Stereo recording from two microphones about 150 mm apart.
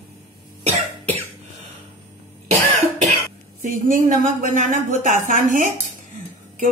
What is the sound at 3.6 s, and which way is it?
A woman's voice, 60° right (ahead or behind).